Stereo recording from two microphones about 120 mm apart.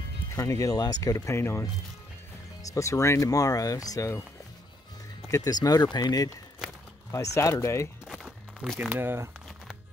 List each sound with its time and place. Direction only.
0.4 s speech: 30° left (ahead or behind)
2.7 s speech: 25° left (ahead or behind)
5.3 s speech: 30° left (ahead or behind)
8.9 s speech: 20° right (ahead or behind)